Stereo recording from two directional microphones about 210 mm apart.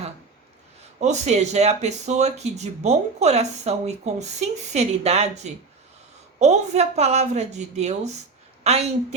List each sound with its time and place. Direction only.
0.9 s speech: 35° right (ahead or behind)